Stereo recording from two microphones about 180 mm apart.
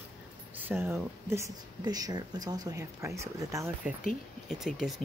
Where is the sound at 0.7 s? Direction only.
15° right (ahead or behind).